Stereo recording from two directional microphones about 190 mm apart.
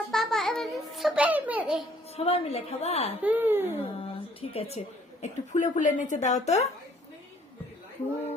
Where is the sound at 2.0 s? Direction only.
30° left (ahead or behind).